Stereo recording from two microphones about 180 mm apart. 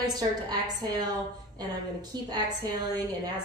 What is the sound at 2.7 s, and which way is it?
Speech, 25° right (ahead or behind).